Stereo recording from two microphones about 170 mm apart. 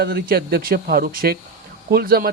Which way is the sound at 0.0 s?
65° right (ahead or behind).